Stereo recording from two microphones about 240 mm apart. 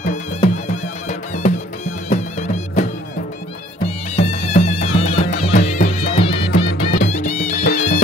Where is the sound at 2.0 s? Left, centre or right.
Left.